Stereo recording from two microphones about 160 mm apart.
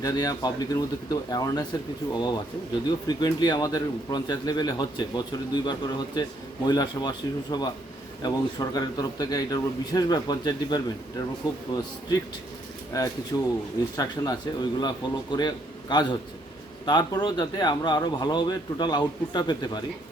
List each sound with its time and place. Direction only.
0.0 s a man's voice: 25° left (ahead or behind)
3.1 s a man's voice: 25° left (ahead or behind)